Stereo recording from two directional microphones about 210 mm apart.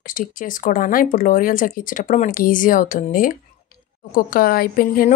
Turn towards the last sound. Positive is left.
turn(degrees=40)  # may be behind; listen again after turning